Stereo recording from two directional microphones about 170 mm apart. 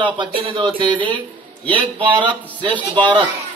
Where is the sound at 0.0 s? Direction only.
30° right (ahead or behind).